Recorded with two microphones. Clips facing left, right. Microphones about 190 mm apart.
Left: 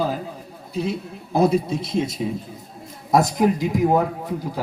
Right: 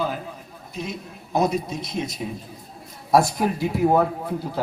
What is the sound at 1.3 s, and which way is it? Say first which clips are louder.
Speech: left 4 dB; 30° left (ahead or behind).